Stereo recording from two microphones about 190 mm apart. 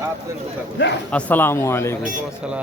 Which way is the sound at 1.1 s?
5° left (ahead or behind).